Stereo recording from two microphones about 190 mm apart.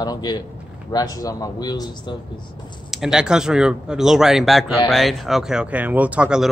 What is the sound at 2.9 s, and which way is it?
Speech, 5° right (ahead or behind).